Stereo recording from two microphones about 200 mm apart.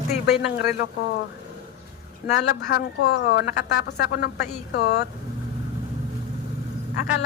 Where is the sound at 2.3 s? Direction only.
55° left (ahead or behind).